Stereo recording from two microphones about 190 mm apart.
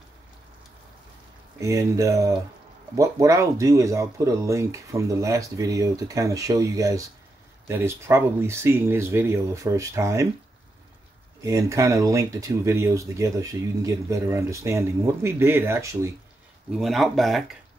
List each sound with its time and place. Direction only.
1.6 s speech: 15° right (ahead or behind)
11.4 s speech: 15° right (ahead or behind)
16.7 s speech: centre (ahead or behind)